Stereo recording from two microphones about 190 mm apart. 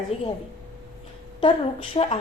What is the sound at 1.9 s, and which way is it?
Speech, 30° left (ahead or behind).